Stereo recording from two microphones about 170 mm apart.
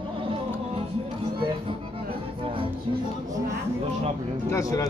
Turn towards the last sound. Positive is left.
turn(degrees=20)  # may be behind; listen again after turning